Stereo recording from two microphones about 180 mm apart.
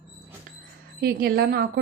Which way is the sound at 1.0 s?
60° right (ahead or behind).